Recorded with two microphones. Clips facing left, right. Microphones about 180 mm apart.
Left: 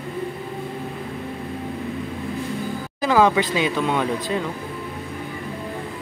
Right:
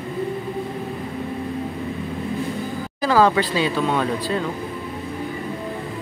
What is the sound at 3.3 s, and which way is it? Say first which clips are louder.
Speech: right 1 dB; 15° left (ahead or behind).